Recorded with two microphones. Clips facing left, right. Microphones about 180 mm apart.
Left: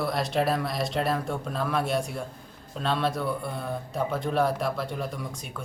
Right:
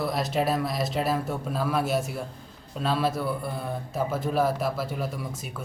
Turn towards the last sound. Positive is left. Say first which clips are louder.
# right 1 dB
turn(degrees=-5)  # may be behind; listen again after turning